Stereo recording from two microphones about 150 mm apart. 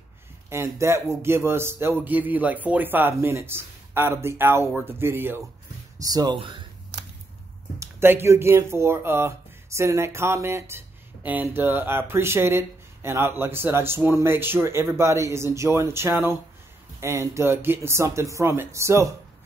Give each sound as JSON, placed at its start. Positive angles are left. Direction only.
{"t": 0.5, "sound": "speech", "side_deg": -20}
{"t": 5.9, "sound": "speech", "side_deg": -25}
{"t": 7.8, "sound": "speech", "side_deg": -15}